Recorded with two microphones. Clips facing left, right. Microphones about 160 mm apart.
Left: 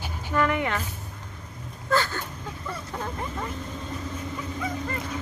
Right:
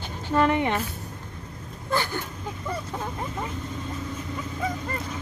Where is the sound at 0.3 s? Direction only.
20° right (ahead or behind).